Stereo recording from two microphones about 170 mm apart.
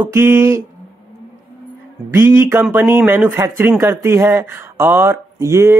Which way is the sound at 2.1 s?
15° right (ahead or behind).